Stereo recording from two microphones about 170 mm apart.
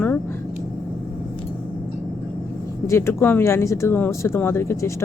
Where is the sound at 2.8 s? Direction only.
15° left (ahead or behind).